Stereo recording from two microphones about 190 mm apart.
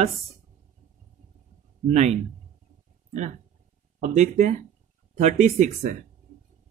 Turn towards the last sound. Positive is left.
turn(degrees=-40)  # may be behind; listen again after turning